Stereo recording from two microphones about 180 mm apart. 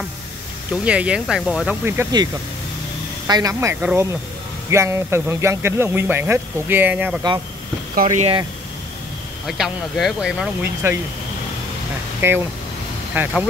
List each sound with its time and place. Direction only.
0.8 s speech: 5° right (ahead or behind)
3.3 s speech: 20° right (ahead or behind)
7.9 s speech: 45° right (ahead or behind)
9.5 s speech: centre (ahead or behind)
12.2 s speech: 15° right (ahead or behind)